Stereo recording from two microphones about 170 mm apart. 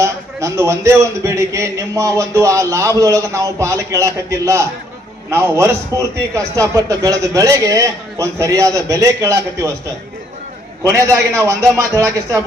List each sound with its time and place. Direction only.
0.0 s a man's voice: 15° right (ahead or behind)
10.9 s a man's voice: 15° right (ahead or behind)